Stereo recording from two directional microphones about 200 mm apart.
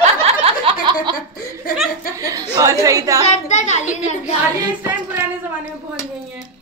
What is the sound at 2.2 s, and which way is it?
Speech, 15° right (ahead or behind).